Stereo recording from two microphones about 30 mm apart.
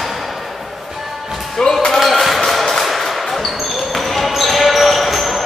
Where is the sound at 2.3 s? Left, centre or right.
Centre.